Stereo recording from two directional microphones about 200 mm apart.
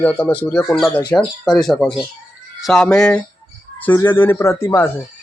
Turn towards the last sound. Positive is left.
turn(degrees=10)  # may be behind; listen again after turning